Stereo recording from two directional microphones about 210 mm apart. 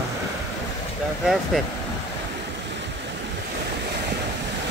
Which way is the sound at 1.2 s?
Centre (ahead or behind).